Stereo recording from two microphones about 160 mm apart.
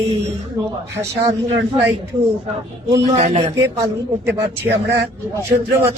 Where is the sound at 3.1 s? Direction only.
45° right (ahead or behind).